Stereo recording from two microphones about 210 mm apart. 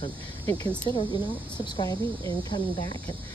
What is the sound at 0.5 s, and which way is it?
Speech, 15° left (ahead or behind).